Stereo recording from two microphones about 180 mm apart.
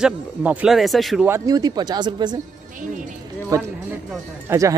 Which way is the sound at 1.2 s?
15° right (ahead or behind).